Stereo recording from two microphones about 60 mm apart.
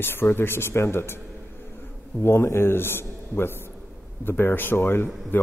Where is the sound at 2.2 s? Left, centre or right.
Left.